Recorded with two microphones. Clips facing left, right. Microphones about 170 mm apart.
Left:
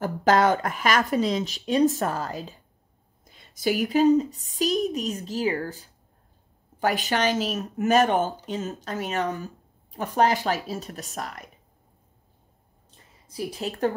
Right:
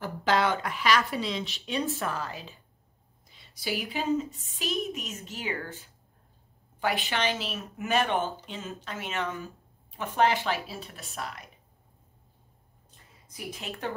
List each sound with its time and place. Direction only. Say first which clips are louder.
0.0 s speech: left 6 dB; 45° left (ahead or behind)
13.3 s speech: left 8 dB; 30° left (ahead or behind)